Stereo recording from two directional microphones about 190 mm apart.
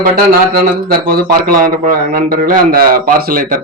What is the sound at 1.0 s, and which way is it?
A man's voice, 50° right (ahead or behind).